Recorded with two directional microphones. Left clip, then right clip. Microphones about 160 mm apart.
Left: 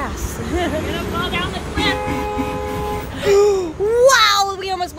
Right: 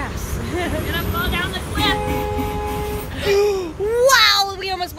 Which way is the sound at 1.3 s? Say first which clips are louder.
Left 1 dB; 15° right (ahead or behind).